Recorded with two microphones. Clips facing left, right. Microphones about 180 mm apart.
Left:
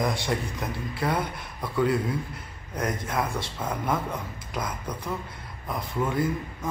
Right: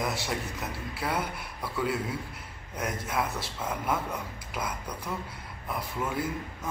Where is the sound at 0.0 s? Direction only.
5° right (ahead or behind).